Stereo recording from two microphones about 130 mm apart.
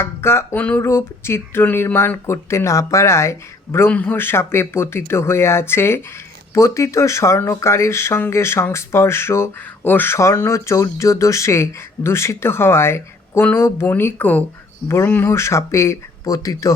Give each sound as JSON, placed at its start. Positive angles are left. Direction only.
{"t": 0.0, "sound": "speech", "side_deg": 20}